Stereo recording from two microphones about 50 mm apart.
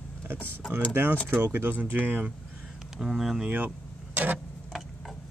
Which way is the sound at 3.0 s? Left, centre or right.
Centre.